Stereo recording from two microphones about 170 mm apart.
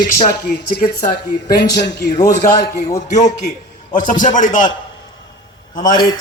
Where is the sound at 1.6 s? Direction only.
80° left.